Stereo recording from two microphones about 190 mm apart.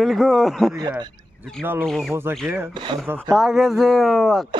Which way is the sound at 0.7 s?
20° right (ahead or behind).